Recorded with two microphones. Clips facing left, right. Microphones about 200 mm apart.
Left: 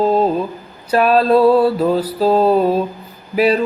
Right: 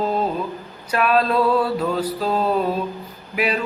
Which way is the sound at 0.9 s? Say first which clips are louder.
Left 6 dB; 35° left (ahead or behind).